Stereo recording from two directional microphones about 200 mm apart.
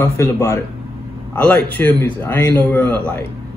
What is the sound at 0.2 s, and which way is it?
Speech, 15° left (ahead or behind).